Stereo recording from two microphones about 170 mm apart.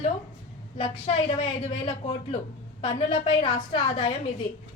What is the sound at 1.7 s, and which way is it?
A woman's voice, 35° left (ahead or behind).